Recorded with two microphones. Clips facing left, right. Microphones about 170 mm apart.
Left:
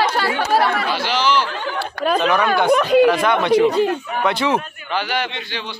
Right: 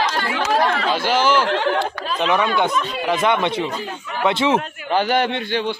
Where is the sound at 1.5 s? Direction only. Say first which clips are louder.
Right 7 dB; 70° right (ahead or behind).